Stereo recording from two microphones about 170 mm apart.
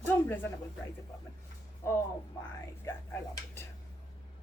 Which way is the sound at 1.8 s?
15° left (ahead or behind).